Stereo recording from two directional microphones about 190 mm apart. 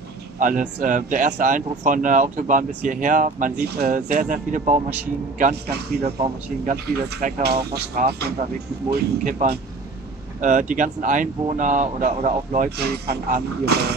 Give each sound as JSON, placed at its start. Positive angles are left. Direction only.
{"t": 0.4, "sound": "speech", "side_deg": -45}
{"t": 5.4, "sound": "a man's voice", "side_deg": -55}
{"t": 6.0, "sound": "speech", "side_deg": -35}
{"t": 6.7, "sound": "speech", "side_deg": -45}
{"t": 8.9, "sound": "speech", "side_deg": -45}
{"t": 12.7, "sound": "a man's voice", "side_deg": -55}